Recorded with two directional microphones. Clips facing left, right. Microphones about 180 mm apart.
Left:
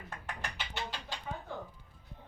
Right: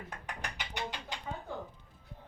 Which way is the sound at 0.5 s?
15° right (ahead or behind).